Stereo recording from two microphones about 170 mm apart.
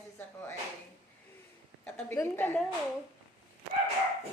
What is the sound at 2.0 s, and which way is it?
Speech, 15° left (ahead or behind).